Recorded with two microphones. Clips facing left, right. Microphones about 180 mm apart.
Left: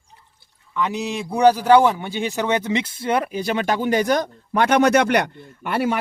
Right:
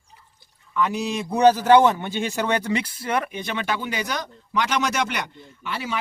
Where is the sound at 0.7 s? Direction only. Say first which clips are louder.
Even; 20° left (ahead or behind).